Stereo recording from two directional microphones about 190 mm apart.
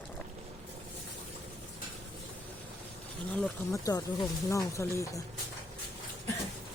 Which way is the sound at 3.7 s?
15° left (ahead or behind).